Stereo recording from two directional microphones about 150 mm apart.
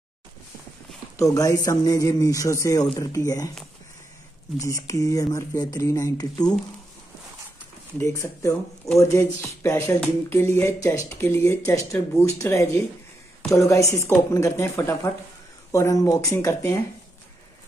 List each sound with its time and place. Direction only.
1.1 s speech: 20° left (ahead or behind)
4.6 s speech: 20° left (ahead or behind)
8.0 s speech: 20° left (ahead or behind)